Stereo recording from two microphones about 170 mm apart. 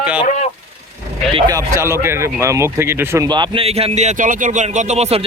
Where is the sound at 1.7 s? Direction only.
15° right (ahead or behind).